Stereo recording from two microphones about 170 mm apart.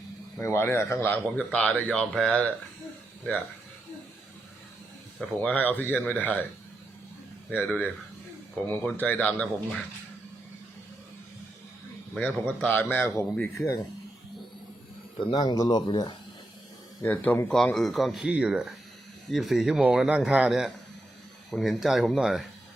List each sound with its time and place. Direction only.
0.3 s speech: 15° left (ahead or behind)
5.4 s speech: 10° left (ahead or behind)
7.5 s speech: 10° left (ahead or behind)
12.1 s speech: 5° left (ahead or behind)
15.2 s speech: 25° left (ahead or behind)
17.0 s speech: 10° left (ahead or behind)